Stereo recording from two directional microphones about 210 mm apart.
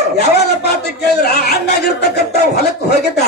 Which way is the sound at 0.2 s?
50° left (ahead or behind).